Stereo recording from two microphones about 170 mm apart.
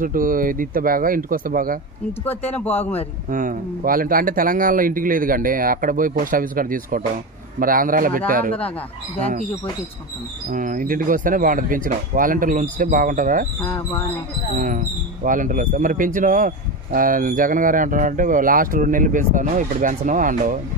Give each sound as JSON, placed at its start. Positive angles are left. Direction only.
{"t": 0.0, "sound": "speech", "side_deg": -55}
{"t": 2.2, "sound": "speech", "side_deg": 10}
{"t": 3.3, "sound": "speech", "side_deg": -55}
{"t": 10.5, "sound": "speech", "side_deg": -50}
{"t": 13.6, "sound": "speech", "side_deg": 15}
{"t": 14.6, "sound": "speech", "side_deg": -50}